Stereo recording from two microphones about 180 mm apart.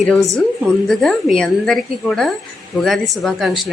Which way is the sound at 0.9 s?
Centre (ahead or behind).